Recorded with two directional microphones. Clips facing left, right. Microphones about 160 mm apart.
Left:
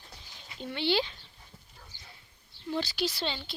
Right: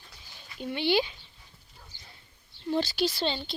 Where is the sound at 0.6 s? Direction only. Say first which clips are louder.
Right 3 dB; 15° right (ahead or behind).